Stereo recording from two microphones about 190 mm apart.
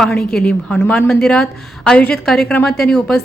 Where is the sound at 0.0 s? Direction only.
5° left (ahead or behind).